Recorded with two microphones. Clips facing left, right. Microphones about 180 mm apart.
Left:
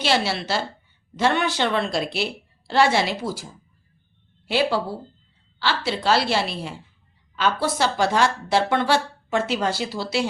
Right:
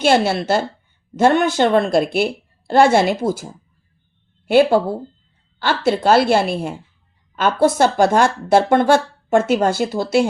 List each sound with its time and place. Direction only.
0.0 s speech: 50° right (ahead or behind)